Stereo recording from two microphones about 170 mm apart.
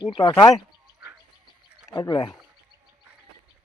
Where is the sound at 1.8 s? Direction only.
20° left (ahead or behind).